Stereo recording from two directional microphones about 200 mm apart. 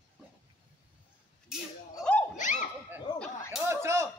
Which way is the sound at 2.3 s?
40° left (ahead or behind).